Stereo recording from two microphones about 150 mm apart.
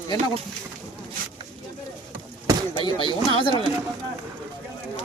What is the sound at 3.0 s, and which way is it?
Speech, 30° left (ahead or behind).